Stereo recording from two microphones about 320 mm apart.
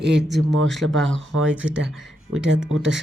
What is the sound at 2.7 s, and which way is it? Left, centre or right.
Speech, right.